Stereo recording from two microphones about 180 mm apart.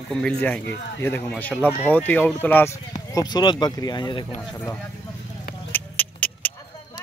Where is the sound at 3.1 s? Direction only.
25° left (ahead or behind).